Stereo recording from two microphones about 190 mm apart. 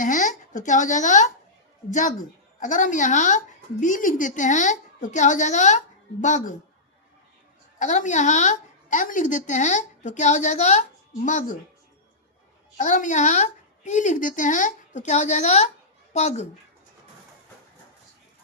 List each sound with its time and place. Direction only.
0.0 s a woman's voice: 40° left (ahead or behind)
7.8 s a woman's voice: 40° left (ahead or behind)
12.7 s a woman's voice: 40° left (ahead or behind)